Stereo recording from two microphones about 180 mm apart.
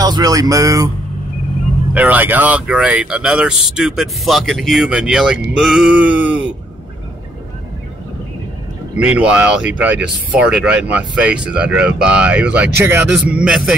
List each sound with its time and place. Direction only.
0.0 s speech: 20° right (ahead or behind)
2.0 s speech: 10° right (ahead or behind)
8.9 s speech: 5° right (ahead or behind)